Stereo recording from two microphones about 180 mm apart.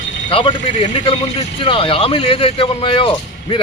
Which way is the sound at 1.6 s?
30° left (ahead or behind).